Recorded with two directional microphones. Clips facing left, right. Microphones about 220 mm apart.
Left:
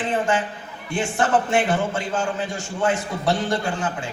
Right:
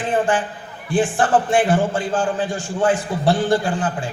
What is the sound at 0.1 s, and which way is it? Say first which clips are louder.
A man's voice: right 5 dB; 30° right (ahead or behind).